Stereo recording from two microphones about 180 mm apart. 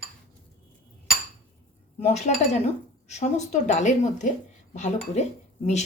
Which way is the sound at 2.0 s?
40° left (ahead or behind).